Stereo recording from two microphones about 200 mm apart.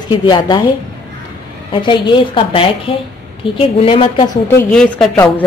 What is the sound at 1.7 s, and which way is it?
A woman's voice, 25° left (ahead or behind).